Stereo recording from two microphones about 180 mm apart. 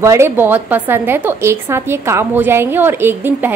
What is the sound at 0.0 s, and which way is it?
A woman's voice, 15° right (ahead or behind).